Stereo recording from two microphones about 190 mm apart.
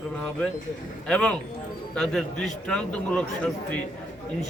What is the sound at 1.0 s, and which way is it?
A man's voice, 5° left (ahead or behind).